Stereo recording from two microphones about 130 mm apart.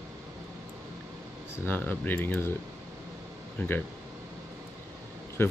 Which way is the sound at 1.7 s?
15° left (ahead or behind).